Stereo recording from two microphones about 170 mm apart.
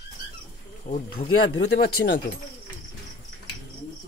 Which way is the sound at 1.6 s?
65° left (ahead or behind).